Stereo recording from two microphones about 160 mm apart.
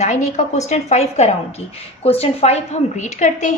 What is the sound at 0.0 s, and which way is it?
A woman's voice, 45° left (ahead or behind).